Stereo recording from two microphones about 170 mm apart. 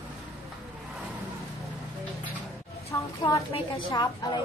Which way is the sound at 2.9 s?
20° left (ahead or behind).